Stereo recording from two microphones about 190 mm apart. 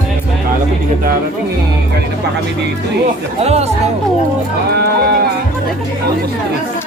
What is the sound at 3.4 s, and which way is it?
Speech, 35° right (ahead or behind).